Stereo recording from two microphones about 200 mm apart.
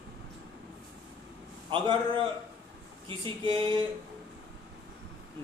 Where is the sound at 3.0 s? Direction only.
25° right (ahead or behind).